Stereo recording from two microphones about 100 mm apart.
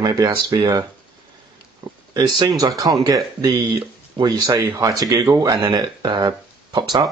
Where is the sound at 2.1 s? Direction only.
45° right (ahead or behind).